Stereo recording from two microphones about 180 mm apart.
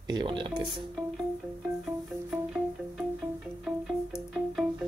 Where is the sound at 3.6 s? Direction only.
5° right (ahead or behind).